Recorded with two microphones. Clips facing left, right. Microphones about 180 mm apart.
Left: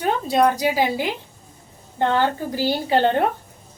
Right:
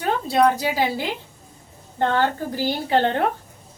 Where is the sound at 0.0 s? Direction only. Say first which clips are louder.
Even; 15° left (ahead or behind).